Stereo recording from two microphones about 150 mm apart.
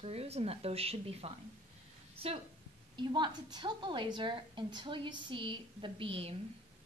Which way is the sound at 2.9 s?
30° right (ahead or behind).